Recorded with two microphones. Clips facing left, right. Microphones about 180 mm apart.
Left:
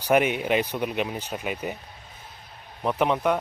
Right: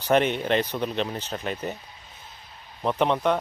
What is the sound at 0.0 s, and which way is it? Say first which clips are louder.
Speech: even; 10° left (ahead or behind).